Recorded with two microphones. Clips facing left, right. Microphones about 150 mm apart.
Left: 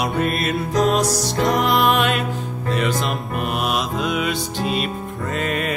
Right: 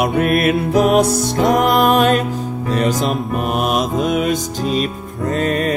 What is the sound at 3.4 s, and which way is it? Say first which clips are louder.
Music: right 4 dB; 45° right (ahead or behind).